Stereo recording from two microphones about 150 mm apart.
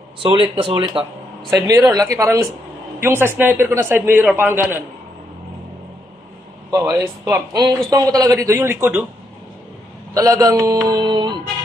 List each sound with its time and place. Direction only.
0.2 s speech: 35° right (ahead or behind)
1.5 s speech: 20° right (ahead or behind)
6.7 s speech: 20° right (ahead or behind)
10.1 s speech: 25° right (ahead or behind)